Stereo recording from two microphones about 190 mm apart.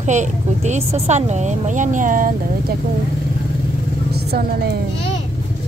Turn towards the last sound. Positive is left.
turn(degrees=-55)  # may be behind; listen again after turning